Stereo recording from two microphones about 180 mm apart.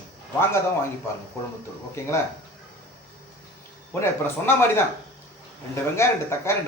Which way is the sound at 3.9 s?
15° left (ahead or behind).